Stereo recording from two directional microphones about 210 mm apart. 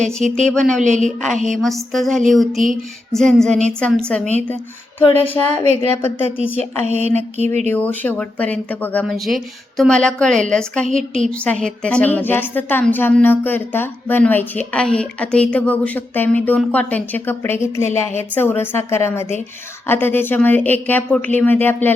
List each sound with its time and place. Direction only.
0.0 s speech: centre (ahead or behind)
0.8 s speech: 35° right (ahead or behind)
1.0 s a woman's voice: centre (ahead or behind)
7.4 s speech: 35° right (ahead or behind)
7.7 s a woman's voice: 5° left (ahead or behind)